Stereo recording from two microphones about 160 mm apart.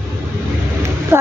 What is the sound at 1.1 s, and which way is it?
Speech, 15° right (ahead or behind).